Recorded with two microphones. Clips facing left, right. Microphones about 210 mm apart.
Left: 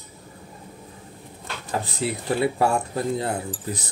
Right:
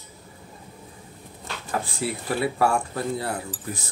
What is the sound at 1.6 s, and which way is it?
Speech, 20° left (ahead or behind).